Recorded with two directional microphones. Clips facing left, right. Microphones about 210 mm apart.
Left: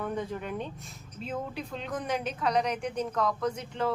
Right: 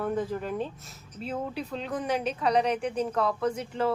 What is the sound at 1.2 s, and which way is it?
Speech, 35° right (ahead or behind).